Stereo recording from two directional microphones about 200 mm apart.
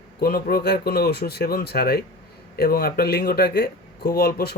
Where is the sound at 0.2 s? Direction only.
50° left (ahead or behind).